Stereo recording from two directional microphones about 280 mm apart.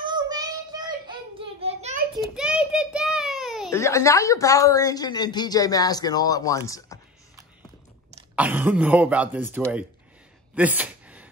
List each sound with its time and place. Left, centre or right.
0.0 s child singing: centre
2.1 s a sound: centre
3.7 s a woman's voice: centre
8.4 s speech: centre
10.5 s gasp: centre